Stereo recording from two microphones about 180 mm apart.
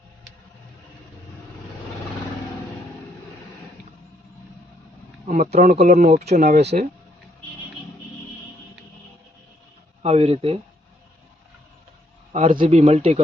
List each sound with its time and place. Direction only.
5.2 s speech: 45° right (ahead or behind)
5.9 s speech: 55° right (ahead or behind)
10.0 s speech: 35° right (ahead or behind)
12.3 s speech: 45° right (ahead or behind)